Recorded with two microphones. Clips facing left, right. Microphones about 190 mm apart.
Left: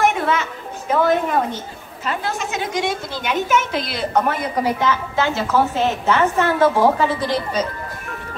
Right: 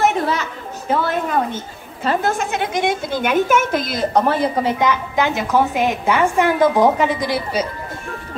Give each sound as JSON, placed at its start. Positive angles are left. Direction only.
{"t": 0.1, "sound": "children playing", "side_deg": -35}
{"t": 2.0, "sound": "a woman's voice", "side_deg": -50}